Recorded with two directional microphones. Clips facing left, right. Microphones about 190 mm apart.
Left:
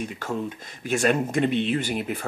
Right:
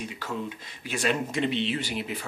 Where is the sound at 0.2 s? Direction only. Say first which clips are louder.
Left 3 dB; 45° left (ahead or behind).